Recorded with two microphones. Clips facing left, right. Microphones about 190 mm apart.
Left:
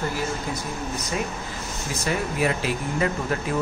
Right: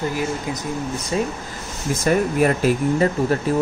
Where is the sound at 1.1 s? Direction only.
30° right (ahead or behind).